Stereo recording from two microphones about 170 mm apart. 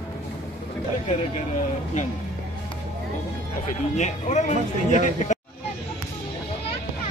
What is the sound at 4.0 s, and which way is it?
Speech, 45° left (ahead or behind).